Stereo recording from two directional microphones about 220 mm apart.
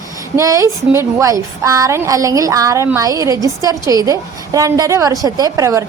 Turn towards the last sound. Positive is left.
turn(degrees=-15)  # may be behind; listen again after turning